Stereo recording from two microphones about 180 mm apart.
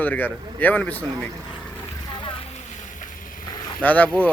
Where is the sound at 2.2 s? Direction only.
30° left (ahead or behind).